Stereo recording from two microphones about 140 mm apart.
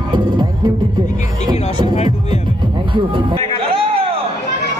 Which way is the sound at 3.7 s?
40° right (ahead or behind).